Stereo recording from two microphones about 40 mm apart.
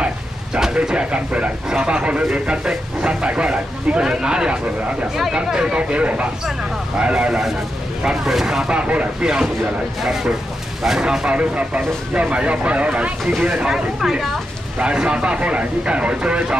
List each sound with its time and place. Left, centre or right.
0.8 s speech: right
8.2 s speech: centre
8.6 s speech: right
9.2 s speech: centre
11.3 s speech: right
14.8 s speech: right